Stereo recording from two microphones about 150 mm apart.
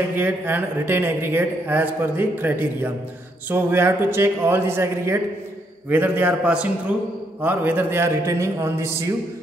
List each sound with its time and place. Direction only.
0.1 s speech: 15° right (ahead or behind)